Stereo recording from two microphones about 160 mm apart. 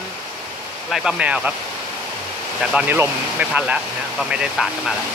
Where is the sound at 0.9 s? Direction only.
5° right (ahead or behind).